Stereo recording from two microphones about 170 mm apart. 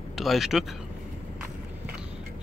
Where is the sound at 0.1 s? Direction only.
Centre (ahead or behind).